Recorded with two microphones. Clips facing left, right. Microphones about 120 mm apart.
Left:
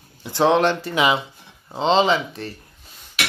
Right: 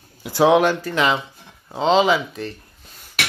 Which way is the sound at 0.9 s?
10° left (ahead or behind).